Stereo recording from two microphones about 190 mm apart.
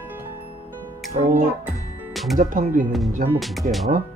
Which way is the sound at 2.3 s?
45° right (ahead or behind).